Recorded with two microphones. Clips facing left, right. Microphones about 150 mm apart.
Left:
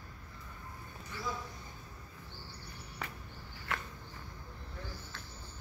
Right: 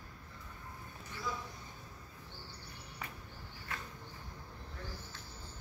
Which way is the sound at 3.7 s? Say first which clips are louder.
Left 6 dB; 80° left.